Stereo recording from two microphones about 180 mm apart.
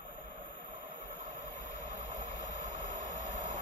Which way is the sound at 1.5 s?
40° right (ahead or behind).